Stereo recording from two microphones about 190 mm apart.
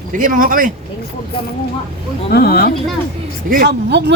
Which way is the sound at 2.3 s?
55° left (ahead or behind).